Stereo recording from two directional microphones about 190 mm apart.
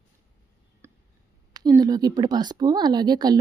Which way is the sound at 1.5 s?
20° right (ahead or behind).